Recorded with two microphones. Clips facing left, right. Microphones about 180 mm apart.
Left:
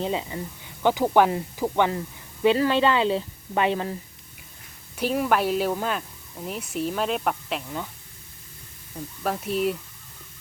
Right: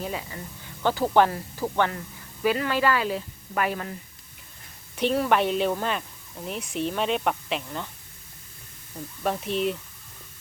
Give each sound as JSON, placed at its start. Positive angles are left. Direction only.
{"t": 0.0, "sound": "speech", "side_deg": 25}
{"t": 4.9, "sound": "speech", "side_deg": 10}
{"t": 9.2, "sound": "speech", "side_deg": 0}